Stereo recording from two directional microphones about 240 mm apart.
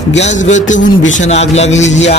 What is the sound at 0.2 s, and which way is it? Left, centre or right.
A man's voice, left.